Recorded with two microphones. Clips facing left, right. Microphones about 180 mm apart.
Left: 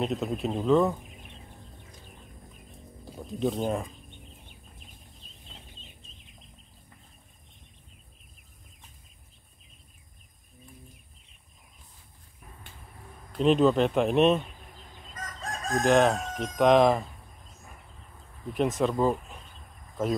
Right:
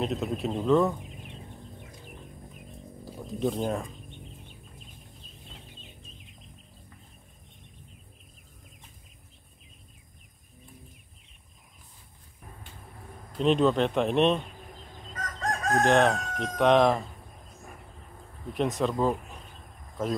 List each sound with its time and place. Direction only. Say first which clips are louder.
0.0 s speech: even; centre (ahead or behind)
3.3 s speech: left 1 dB; centre (ahead or behind)
13.4 s speech: left 2 dB; centre (ahead or behind)
15.4 s chicken: right 4 dB; 70° right (ahead or behind)
15.8 s speech: left 1 dB; centre (ahead or behind)
18.5 s speech: left 1 dB; centre (ahead or behind)